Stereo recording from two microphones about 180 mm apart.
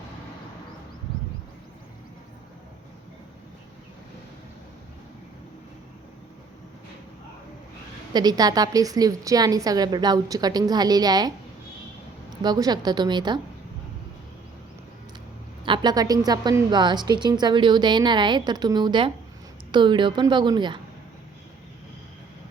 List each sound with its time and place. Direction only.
8.1 s a woman's voice: 20° right (ahead or behind)
12.4 s a woman's voice: 20° right (ahead or behind)
15.6 s a woman's voice: 25° right (ahead or behind)